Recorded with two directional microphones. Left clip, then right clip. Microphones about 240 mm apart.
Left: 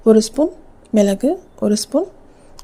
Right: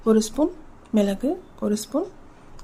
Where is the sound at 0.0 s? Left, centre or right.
Centre.